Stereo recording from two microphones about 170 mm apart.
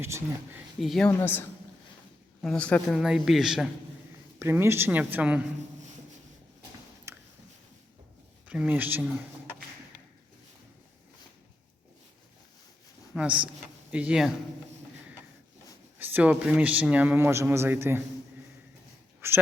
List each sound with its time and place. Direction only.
0.0 s a man's voice: 15° right (ahead or behind)
0.8 s speech: centre (ahead or behind)
1.1 s a woman's voice: 10° left (ahead or behind)
4.4 s a man's voice: 15° right (ahead or behind)
6.6 s a sound: 15° right (ahead or behind)
8.4 s a man's voice: 5° right (ahead or behind)
13.1 s a man's voice: 5° right (ahead or behind)
16.0 s a man's voice: 10° right (ahead or behind)
19.2 s a woman's voice: 15° right (ahead or behind)